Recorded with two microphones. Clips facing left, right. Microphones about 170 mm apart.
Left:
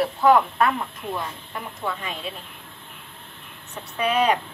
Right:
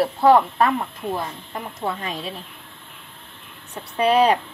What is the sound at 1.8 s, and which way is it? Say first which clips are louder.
Speech: right 3 dB; 35° right (ahead or behind).